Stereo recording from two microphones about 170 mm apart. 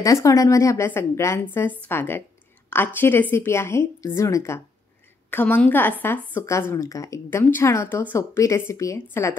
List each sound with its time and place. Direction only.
0.0 s a woman's voice: 20° left (ahead or behind)